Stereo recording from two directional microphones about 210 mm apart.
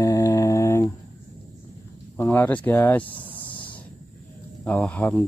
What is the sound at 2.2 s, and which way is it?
Speech, 10° left (ahead or behind).